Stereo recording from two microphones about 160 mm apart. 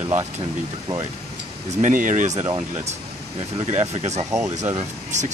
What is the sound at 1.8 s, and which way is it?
Speech, 55° right (ahead or behind).